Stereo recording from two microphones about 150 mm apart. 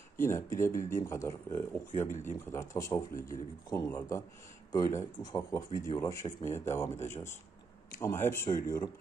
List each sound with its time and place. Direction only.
0.2 s speech: 20° left (ahead or behind)
2.0 s speech: 55° left (ahead or behind)
2.3 s speech: 20° left (ahead or behind)